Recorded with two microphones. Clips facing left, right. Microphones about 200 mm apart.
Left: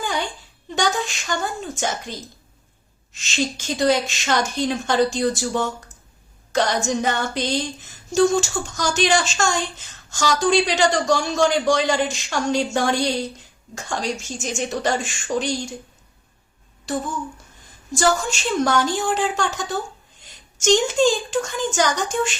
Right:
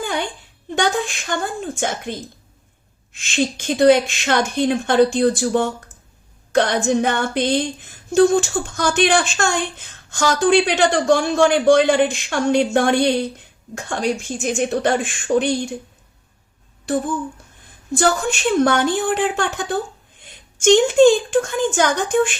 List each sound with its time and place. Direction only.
0.0 s a sound: 55° right (ahead or behind)
0.7 s female singing: 55° right (ahead or behind)
6.5 s speech: 55° right (ahead or behind)
6.8 s female singing: 55° right (ahead or behind)
16.8 s speech: 55° right (ahead or behind)
17.9 s female singing: 60° right (ahead or behind)